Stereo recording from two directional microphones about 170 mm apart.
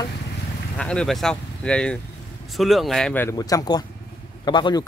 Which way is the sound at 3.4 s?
20° left (ahead or behind).